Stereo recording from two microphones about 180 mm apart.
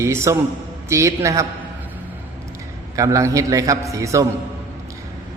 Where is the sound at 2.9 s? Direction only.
20° right (ahead or behind).